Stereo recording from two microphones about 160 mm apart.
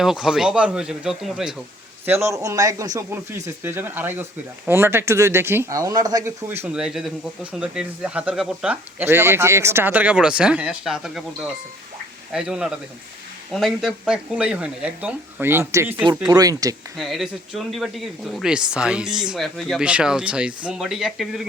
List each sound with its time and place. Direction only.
0.0 s speech: 5° right (ahead or behind)
2.0 s speech: 15° right (ahead or behind)
17.0 s speech: centre (ahead or behind)